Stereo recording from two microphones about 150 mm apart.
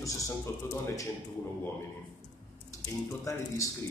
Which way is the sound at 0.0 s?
20° left (ahead or behind).